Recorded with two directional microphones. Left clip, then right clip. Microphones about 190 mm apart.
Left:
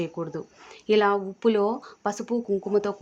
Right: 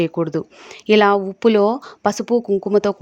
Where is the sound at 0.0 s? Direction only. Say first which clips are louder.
Right 11 dB; 40° right (ahead or behind).